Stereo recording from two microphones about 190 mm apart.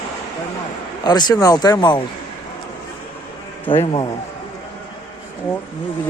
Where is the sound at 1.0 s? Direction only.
20° left (ahead or behind).